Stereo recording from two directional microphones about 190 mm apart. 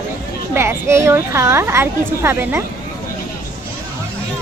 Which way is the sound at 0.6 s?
15° right (ahead or behind).